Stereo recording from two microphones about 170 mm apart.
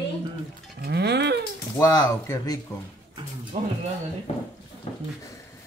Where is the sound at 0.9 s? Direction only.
75° right (ahead or behind).